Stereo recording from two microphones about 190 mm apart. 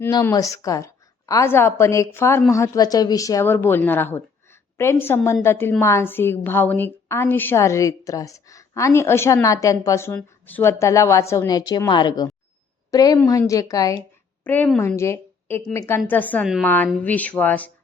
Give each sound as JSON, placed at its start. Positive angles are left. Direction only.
{"t": 0.0, "sound": "a woman's voice", "side_deg": 15}